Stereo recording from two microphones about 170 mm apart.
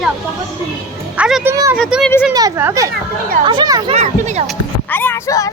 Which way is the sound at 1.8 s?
5° right (ahead or behind).